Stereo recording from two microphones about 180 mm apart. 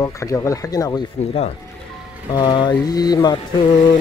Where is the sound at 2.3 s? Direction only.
25° left (ahead or behind).